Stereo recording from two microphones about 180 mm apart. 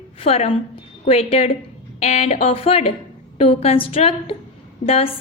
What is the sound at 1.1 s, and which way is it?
A woman's voice, 35° left (ahead or behind).